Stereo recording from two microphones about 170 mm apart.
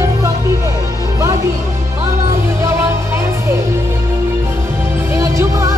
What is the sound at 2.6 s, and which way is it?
Music, 15° right (ahead or behind).